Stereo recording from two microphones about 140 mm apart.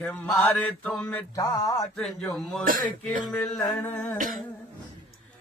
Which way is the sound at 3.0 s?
10° left (ahead or behind).